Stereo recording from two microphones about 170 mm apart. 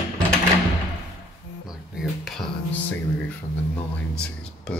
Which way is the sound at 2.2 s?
Centre (ahead or behind).